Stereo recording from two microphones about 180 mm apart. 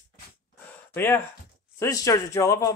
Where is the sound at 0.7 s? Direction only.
15° left (ahead or behind).